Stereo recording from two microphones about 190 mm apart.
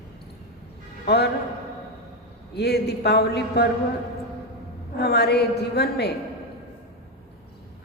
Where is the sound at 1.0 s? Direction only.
60° left (ahead or behind).